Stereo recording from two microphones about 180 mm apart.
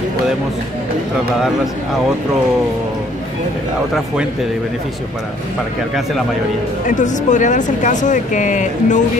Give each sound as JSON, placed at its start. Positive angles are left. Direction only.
{"t": 6.9, "sound": "speech", "side_deg": 45}